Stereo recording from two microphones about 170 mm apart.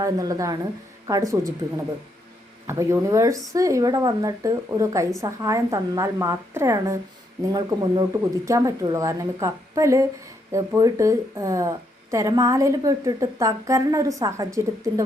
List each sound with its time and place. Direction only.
0.0 s speech: 20° right (ahead or behind)
2.6 s speech: 15° right (ahead or behind)